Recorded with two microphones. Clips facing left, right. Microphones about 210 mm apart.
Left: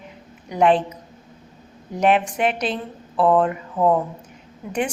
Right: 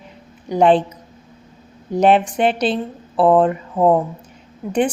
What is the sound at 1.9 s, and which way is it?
A woman's voice, 30° right (ahead or behind).